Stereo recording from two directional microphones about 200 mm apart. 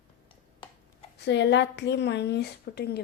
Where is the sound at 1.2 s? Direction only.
60° left (ahead or behind).